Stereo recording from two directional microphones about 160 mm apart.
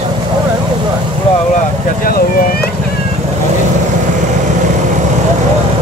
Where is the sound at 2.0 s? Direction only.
70° left (ahead or behind).